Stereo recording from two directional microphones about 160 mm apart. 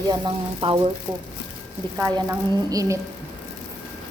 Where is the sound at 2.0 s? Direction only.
25° right (ahead or behind).